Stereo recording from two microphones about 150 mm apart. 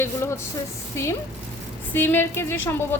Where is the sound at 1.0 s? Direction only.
20° left (ahead or behind).